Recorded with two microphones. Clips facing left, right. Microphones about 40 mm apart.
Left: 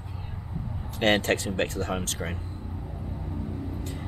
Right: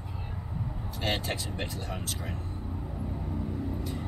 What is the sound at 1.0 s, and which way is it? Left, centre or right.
Speech, left.